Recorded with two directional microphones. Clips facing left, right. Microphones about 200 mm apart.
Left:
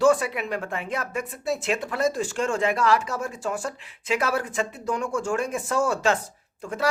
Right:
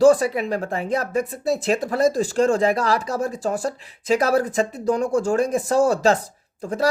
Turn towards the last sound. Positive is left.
turn(degrees=-35)  # may be behind; listen again after turning